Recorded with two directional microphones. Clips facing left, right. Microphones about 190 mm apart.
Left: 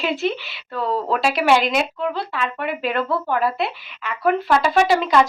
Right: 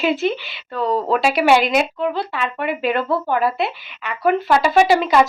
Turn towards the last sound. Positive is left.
turn(degrees=-5)  # may be behind; listen again after turning